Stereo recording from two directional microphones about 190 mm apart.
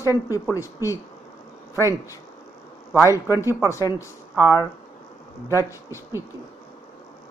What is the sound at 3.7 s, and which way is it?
Speech, 15° left (ahead or behind).